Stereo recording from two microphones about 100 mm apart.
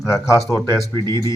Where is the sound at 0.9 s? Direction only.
45° right (ahead or behind).